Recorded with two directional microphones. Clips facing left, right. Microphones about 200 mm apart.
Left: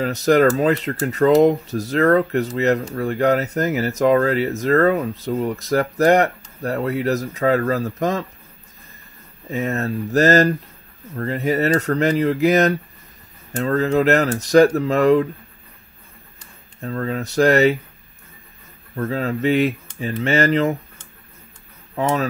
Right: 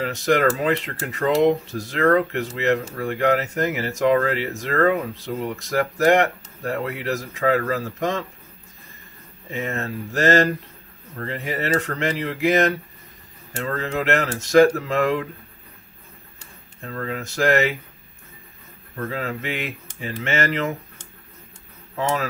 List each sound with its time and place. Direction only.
0.0 s speech: 40° left (ahead or behind)
9.5 s speech: 40° left (ahead or behind)
16.8 s speech: 35° left (ahead or behind)
18.9 s speech: 35° left (ahead or behind)
21.9 s speech: 35° left (ahead or behind)